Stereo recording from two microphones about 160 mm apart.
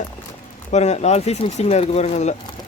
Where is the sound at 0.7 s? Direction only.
45° left (ahead or behind).